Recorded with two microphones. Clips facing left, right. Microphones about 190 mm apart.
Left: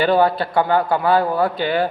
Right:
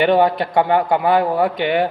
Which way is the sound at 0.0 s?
20° right (ahead or behind).